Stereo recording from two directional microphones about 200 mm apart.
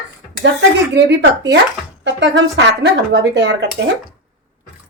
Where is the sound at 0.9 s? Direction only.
60° right (ahead or behind).